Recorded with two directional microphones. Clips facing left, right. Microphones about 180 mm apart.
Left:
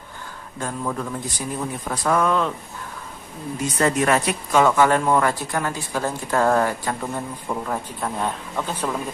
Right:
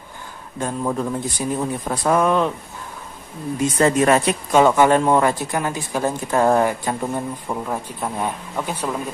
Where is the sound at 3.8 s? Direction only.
25° right (ahead or behind).